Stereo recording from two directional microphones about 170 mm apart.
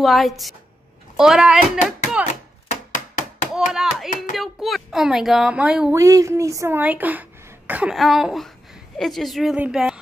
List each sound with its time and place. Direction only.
0.0 s speech: centre (ahead or behind)
2.7 s a sound: 45° left (ahead or behind)
3.5 s speech: 5° right (ahead or behind)
5.9 s speech: 20° right (ahead or behind); by 9.9 s 5° right (ahead or behind)